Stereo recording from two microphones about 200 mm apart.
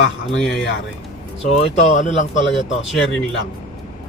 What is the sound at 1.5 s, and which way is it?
Speech, 35° left (ahead or behind).